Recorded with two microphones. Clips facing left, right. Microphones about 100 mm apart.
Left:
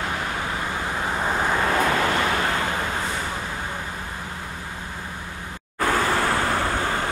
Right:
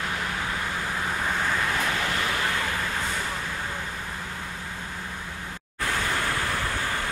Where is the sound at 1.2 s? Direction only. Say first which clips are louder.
Left 5 dB; 35° left (ahead or behind).